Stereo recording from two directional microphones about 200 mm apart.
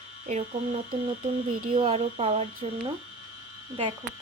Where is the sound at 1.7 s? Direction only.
30° right (ahead or behind).